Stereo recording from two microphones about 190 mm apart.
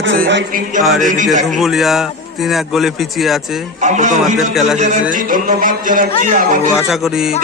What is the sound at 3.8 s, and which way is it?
A man's voice, 40° right (ahead or behind).